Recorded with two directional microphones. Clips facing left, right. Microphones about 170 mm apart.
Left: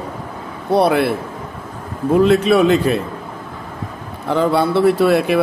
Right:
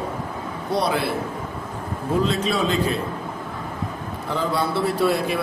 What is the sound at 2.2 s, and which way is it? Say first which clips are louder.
Speech: left 12 dB; 65° left (ahead or behind).